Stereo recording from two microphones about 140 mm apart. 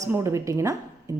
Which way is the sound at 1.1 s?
25° right (ahead or behind).